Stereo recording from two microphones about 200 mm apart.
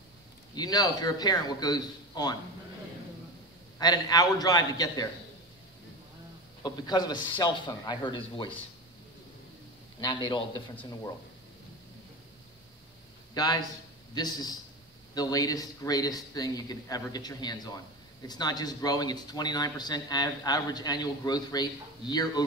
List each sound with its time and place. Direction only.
0.6 s speech: 20° left (ahead or behind)
3.7 s speech: 20° left (ahead or behind)
6.6 s speech: 20° left (ahead or behind)
9.9 s speech: 20° left (ahead or behind)
13.3 s a man's voice: 20° left (ahead or behind)